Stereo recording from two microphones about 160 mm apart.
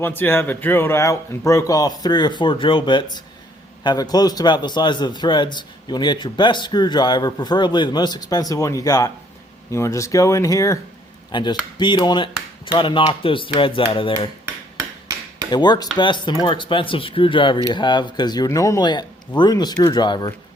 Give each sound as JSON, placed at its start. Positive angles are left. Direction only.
{"t": 0.0, "sound": "a man's voice", "side_deg": 10}
{"t": 15.4, "sound": "a man's voice", "side_deg": 25}